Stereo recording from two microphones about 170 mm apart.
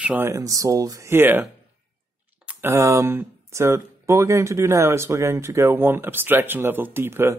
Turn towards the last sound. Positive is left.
turn(degrees=-15)  # may be behind; listen again after turning